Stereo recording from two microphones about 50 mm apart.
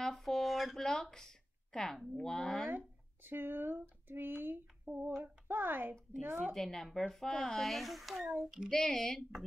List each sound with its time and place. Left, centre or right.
0.0 s a sound: centre
1.7 s speech: centre
2.7 s speech: right
4.8 s a sound: right
5.2 s a child's voice: right
6.5 s speech: centre